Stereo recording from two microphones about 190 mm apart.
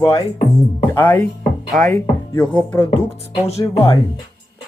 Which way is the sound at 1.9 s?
10° left (ahead or behind).